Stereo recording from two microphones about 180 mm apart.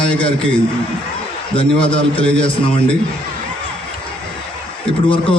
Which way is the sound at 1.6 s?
30° left (ahead or behind).